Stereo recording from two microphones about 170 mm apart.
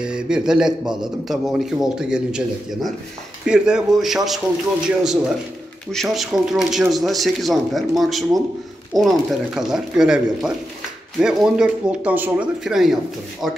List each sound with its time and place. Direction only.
0.0 s a man's voice: 5° right (ahead or behind)